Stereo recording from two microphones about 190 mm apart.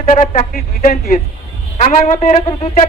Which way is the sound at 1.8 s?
35° left (ahead or behind).